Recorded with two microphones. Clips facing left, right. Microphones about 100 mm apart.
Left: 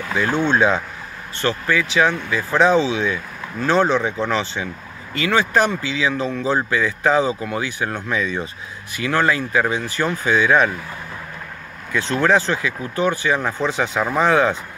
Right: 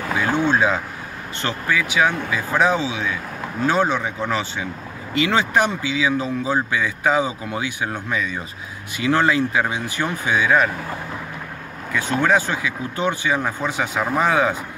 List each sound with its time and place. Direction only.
0.1 s speech: 10° right (ahead or behind)
5.1 s speech: 20° right (ahead or behind)
8.9 s speech: 20° right (ahead or behind)
11.9 s speech: 10° right (ahead or behind)